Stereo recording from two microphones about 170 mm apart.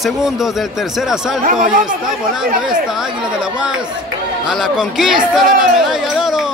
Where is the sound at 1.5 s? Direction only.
50° right (ahead or behind).